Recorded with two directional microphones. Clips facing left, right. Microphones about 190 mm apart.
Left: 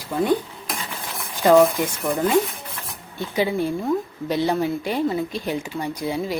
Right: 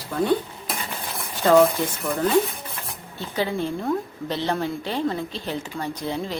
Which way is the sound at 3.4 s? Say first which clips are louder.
Left 3 dB; 10° left (ahead or behind).